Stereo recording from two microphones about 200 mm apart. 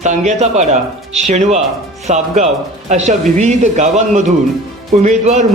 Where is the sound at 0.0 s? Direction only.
35° right (ahead or behind).